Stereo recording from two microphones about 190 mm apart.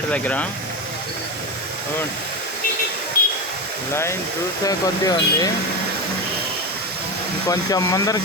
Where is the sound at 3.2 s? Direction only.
50° left (ahead or behind).